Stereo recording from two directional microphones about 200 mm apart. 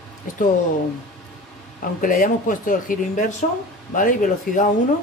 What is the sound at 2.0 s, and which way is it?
Speech, 45° left (ahead or behind).